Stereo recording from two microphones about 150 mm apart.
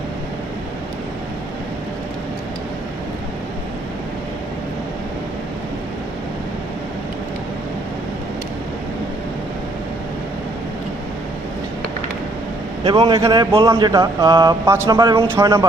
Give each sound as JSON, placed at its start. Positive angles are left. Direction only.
{"t": 12.9, "sound": "speech", "side_deg": -25}